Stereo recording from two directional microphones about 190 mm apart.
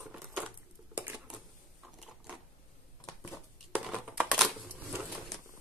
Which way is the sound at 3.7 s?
5° right (ahead or behind).